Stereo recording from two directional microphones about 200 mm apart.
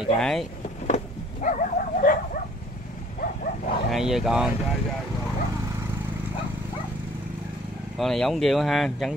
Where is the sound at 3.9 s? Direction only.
Centre (ahead or behind).